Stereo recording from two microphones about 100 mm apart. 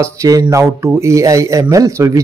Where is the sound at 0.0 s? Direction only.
35° right (ahead or behind).